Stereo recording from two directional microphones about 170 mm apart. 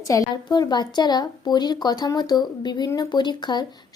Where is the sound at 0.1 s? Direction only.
20° left (ahead or behind).